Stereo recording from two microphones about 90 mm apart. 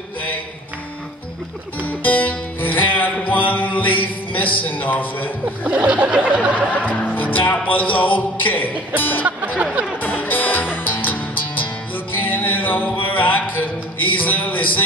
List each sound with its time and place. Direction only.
1.9 s music: 20° left (ahead or behind)
5.6 s snicker: 15° right (ahead or behind)
6.9 s music: 20° left (ahead or behind)
9.6 s snicker: 15° right (ahead or behind)
9.9 s music: 20° left (ahead or behind)